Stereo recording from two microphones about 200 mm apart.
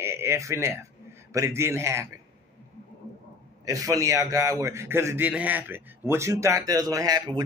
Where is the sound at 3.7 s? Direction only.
15° right (ahead or behind).